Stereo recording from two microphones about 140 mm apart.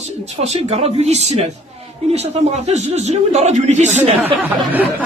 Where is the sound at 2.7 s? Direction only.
50° right (ahead or behind).